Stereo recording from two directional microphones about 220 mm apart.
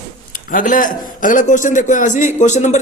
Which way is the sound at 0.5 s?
35° left (ahead or behind).